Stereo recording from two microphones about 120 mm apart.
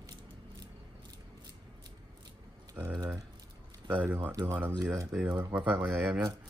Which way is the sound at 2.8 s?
15° right (ahead or behind).